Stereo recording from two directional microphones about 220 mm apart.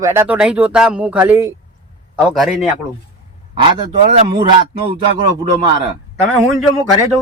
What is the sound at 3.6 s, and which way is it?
Speech, 25° right (ahead or behind).